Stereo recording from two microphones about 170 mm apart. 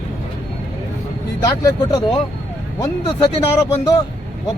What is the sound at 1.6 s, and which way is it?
Speech, 20° left (ahead or behind).